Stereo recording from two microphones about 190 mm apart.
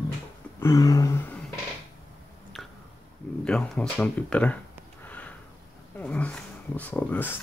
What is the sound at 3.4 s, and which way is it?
Speech, 5° left (ahead or behind).